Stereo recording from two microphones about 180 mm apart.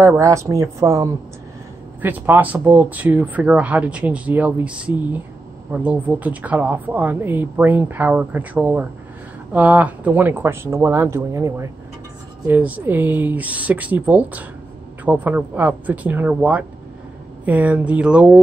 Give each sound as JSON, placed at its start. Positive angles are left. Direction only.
{"t": 0.0, "sound": "speech", "side_deg": -15}